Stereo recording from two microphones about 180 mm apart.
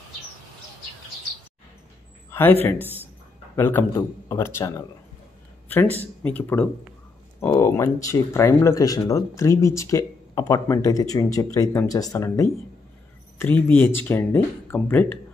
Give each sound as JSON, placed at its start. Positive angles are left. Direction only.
{"t": 2.3, "sound": "a man's voice", "side_deg": 10}
{"t": 2.8, "sound": "speech", "side_deg": -10}
{"t": 3.5, "sound": "a man's voice", "side_deg": 10}
{"t": 5.9, "sound": "speech", "side_deg": 10}